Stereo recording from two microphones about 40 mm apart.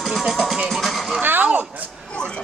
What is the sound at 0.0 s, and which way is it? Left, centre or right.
Music, centre.